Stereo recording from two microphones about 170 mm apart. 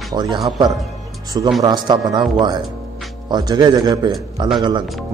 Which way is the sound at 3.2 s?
25° right (ahead or behind).